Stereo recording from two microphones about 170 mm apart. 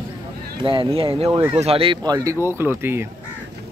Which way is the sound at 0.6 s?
30° right (ahead or behind).